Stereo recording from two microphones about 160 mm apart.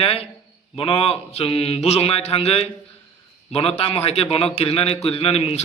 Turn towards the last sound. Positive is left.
turn(degrees=40)  # may be behind; listen again after turning